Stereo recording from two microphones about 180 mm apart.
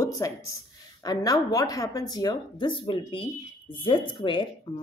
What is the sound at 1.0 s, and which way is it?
A woman's voice, 20° left (ahead or behind).